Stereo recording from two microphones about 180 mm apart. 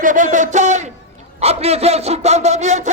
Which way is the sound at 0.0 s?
45° right (ahead or behind).